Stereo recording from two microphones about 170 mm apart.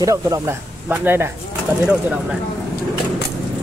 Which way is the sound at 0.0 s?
20° right (ahead or behind).